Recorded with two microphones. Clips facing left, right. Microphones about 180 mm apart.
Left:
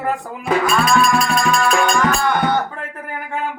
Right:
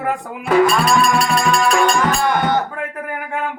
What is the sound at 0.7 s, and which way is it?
Music, 35° right (ahead or behind).